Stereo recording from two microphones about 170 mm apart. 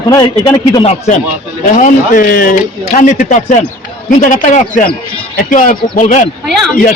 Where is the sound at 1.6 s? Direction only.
50° left (ahead or behind).